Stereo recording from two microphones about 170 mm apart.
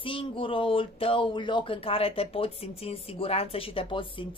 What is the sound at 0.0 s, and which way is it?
Speech, 30° left (ahead or behind).